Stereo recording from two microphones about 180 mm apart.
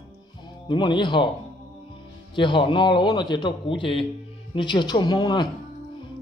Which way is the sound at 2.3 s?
25° left (ahead or behind).